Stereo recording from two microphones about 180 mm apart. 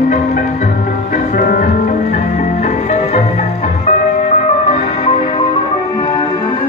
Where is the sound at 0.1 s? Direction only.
40° left (ahead or behind); by 6.4 s 25° left (ahead or behind).